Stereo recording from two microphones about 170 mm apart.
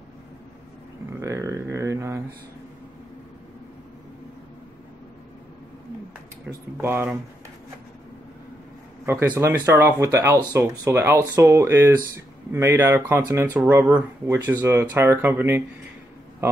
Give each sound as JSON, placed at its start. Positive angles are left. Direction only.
{"t": 1.2, "sound": "a sound", "side_deg": -20}
{"t": 6.8, "sound": "speech", "side_deg": -10}
{"t": 9.0, "sound": "speech", "side_deg": -15}